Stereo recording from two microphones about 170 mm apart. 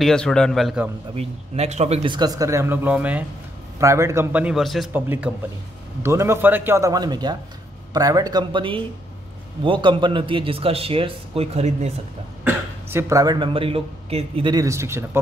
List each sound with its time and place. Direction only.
0.0 s a man's voice: 5° left (ahead or behind)
1.1 s a man's voice: 40° right (ahead or behind)
2.1 s a man's voice: 20° right (ahead or behind); by 11.9 s 40° right (ahead or behind)
12.4 s speech: 15° right (ahead or behind)